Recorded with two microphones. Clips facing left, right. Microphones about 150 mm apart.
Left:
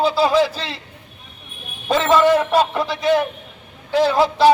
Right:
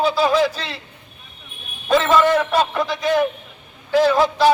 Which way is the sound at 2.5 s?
25° left (ahead or behind).